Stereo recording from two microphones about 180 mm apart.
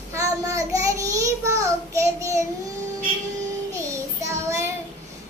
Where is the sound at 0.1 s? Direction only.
15° right (ahead or behind).